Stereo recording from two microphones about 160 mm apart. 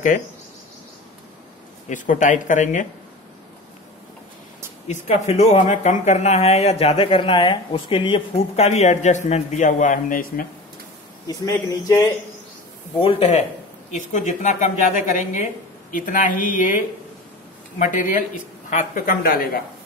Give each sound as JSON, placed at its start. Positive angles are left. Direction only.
{"t": 1.9, "sound": "speech", "side_deg": 50}
{"t": 4.8, "sound": "speech", "side_deg": 45}
{"t": 11.2, "sound": "speech", "side_deg": 20}
{"t": 12.9, "sound": "speech", "side_deg": 35}